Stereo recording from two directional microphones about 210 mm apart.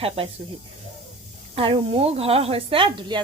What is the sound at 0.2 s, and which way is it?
Speech, 30° right (ahead or behind).